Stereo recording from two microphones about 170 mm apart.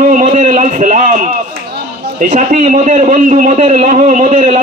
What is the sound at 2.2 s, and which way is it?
A man's voice, 40° right (ahead or behind).